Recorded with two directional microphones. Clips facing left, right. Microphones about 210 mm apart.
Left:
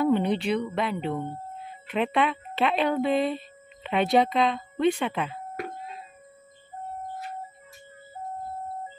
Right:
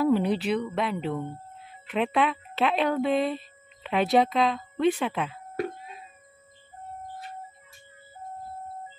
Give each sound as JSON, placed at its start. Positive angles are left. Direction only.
{"t": 0.0, "sound": "speech", "side_deg": -5}